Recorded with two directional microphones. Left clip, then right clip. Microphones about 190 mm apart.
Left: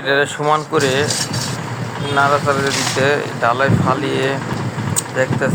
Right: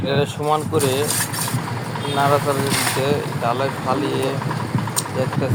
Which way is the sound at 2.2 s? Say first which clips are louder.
Left 3 dB; 30° left (ahead or behind).